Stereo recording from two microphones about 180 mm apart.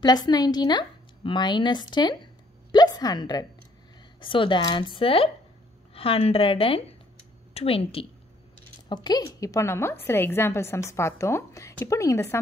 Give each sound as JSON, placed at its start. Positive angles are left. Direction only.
{"t": 0.0, "sound": "a woman's voice", "side_deg": 20}